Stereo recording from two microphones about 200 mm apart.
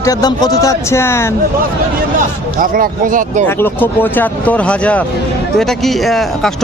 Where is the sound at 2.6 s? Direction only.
45° right (ahead or behind).